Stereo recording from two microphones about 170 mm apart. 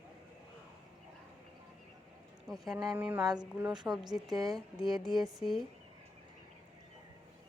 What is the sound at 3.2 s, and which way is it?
Speech, 25° right (ahead or behind).